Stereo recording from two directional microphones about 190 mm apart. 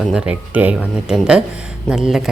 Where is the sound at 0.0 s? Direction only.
5° right (ahead or behind).